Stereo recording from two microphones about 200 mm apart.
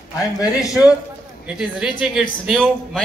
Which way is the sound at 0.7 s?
5° right (ahead or behind).